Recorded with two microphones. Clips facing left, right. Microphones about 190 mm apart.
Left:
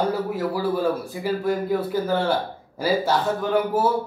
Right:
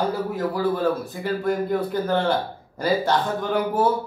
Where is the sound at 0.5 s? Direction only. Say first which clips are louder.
Right 1 dB; 10° left (ahead or behind).